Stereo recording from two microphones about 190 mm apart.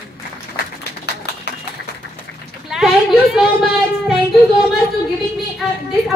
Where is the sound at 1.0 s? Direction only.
60° left (ahead or behind).